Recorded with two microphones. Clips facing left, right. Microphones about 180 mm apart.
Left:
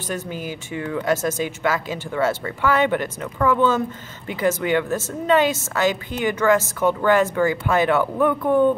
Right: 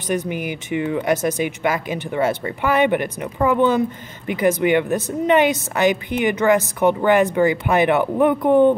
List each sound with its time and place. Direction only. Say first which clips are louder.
0.0 s speech: right 5 dB; 15° right (ahead or behind)